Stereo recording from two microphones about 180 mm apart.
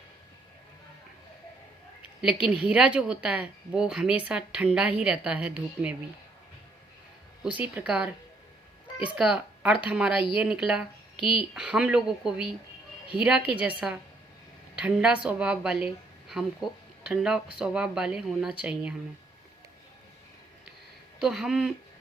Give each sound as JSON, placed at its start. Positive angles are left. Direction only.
{"t": 2.2, "sound": "a woman's voice", "side_deg": -5}
{"t": 7.4, "sound": "a woman's voice", "side_deg": -5}
{"t": 9.1, "sound": "speech", "side_deg": -5}
{"t": 11.2, "sound": "speech", "side_deg": 30}
{"t": 11.5, "sound": "a woman's voice", "side_deg": -5}
{"t": 21.2, "sound": "speech", "side_deg": 0}